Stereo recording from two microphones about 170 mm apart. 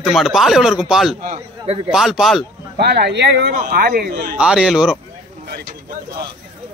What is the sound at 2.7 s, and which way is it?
Speech, 75° right (ahead or behind).